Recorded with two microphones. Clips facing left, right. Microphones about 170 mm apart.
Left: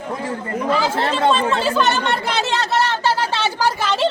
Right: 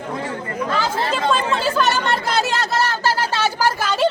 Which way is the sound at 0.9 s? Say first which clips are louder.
Left 3 dB; 70° left (ahead or behind).